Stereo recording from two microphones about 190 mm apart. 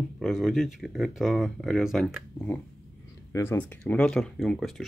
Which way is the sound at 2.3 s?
10° left (ahead or behind).